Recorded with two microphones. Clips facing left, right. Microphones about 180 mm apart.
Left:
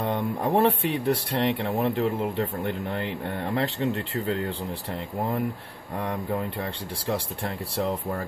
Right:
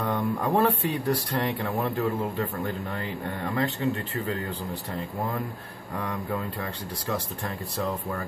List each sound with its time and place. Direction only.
0.0 s speech: 25° left (ahead or behind)
7.1 s speech: 30° left (ahead or behind)